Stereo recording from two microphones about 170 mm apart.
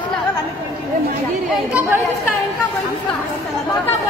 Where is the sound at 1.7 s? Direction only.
10° right (ahead or behind).